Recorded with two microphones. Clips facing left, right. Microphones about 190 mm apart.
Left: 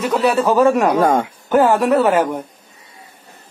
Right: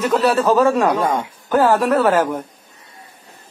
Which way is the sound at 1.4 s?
15° left (ahead or behind).